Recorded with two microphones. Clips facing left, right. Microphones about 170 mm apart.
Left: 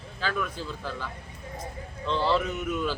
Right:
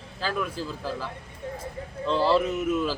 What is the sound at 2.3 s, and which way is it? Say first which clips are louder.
Speech: right 4 dB; 10° right (ahead or behind).